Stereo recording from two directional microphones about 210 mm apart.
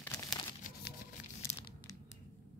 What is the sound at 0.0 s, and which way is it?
Crumpling, 15° left (ahead or behind).